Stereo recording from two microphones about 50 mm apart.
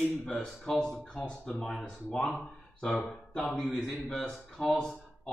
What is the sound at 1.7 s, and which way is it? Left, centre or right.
Speech, centre.